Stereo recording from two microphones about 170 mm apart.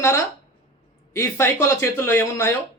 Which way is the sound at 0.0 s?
15° left (ahead or behind).